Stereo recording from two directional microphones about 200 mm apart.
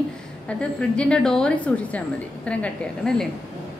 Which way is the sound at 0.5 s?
5° left (ahead or behind).